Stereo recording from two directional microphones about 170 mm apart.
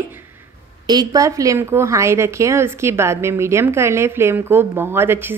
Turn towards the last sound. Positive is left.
turn(degrees=-15)  # may be behind; listen again after turning